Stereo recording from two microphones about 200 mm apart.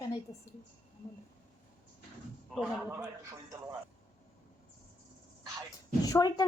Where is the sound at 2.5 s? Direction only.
5° right (ahead or behind).